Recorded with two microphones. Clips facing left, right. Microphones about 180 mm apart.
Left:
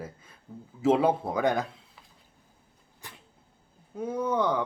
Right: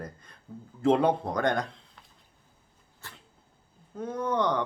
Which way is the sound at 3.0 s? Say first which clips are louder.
Left 1 dB; 15° left (ahead or behind).